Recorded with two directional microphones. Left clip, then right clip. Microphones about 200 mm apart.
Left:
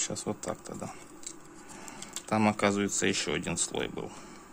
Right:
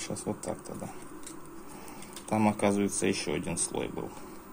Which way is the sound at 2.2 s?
30° left (ahead or behind).